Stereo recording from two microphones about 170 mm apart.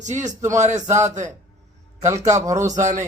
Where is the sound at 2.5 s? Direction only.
45° right (ahead or behind).